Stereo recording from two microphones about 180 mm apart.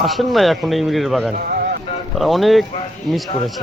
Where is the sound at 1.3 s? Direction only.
55° right (ahead or behind).